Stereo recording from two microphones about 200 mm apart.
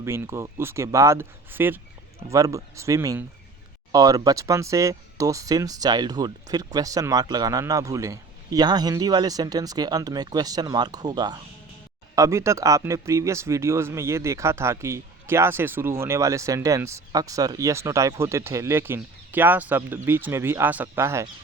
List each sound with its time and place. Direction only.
0.0 s speech: 15° right (ahead or behind)